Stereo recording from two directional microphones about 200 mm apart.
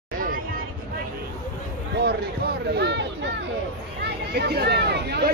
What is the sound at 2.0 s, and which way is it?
Speech, 50° right (ahead or behind).